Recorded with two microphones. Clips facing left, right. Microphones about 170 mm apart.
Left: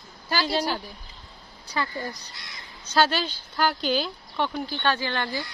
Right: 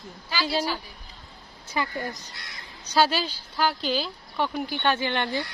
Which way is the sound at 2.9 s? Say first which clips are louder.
Even; 10° right (ahead or behind).